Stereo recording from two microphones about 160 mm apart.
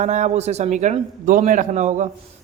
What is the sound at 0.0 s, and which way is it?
Speech, 45° right (ahead or behind).